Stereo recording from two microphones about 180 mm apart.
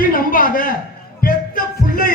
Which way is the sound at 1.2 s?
50° left (ahead or behind).